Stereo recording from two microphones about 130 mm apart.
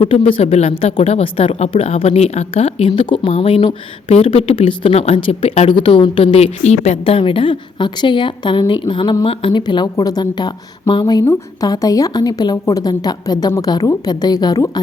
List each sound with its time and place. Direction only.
0.0 s a woman's voice: 40° left (ahead or behind)
0.3 s a woman's voice: 55° left (ahead or behind); by 14.7 s 30° left (ahead or behind)